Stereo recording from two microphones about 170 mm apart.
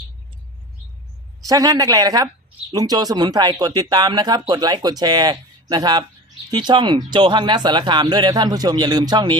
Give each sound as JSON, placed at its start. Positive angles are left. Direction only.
{"t": 1.5, "sound": "speech", "side_deg": -20}